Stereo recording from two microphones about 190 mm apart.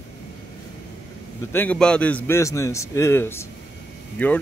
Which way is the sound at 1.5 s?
10° left (ahead or behind).